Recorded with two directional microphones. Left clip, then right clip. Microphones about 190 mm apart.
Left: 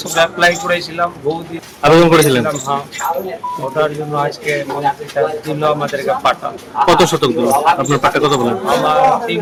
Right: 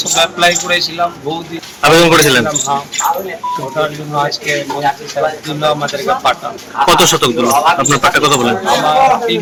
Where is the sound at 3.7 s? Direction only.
5° left (ahead or behind).